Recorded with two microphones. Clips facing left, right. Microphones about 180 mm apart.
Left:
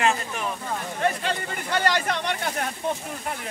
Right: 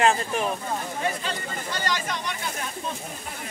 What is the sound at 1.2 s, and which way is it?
Speech, 60° left (ahead or behind).